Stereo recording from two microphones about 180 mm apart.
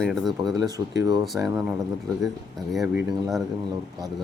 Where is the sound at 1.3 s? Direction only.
15° right (ahead or behind).